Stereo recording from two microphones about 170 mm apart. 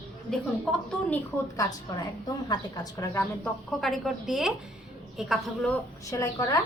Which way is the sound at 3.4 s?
Centre (ahead or behind).